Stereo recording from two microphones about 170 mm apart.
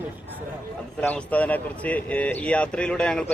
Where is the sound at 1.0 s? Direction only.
10° left (ahead or behind).